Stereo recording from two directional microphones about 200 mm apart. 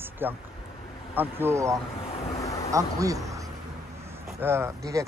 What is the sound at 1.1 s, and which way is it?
Speech, 10° right (ahead or behind).